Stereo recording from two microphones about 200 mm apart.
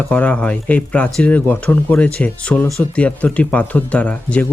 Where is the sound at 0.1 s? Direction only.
5° left (ahead or behind).